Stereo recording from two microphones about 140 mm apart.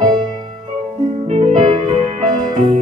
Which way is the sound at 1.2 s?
50° right (ahead or behind).